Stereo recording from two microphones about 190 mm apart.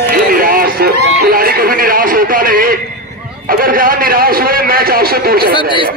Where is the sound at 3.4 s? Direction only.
50° right (ahead or behind).